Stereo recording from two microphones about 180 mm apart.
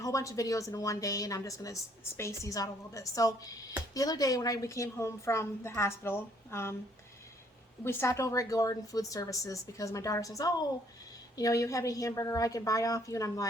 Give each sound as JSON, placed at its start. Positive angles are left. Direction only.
{"t": 0.0, "sound": "a woman's voice", "side_deg": 20}
{"t": 7.9, "sound": "a woman's voice", "side_deg": 15}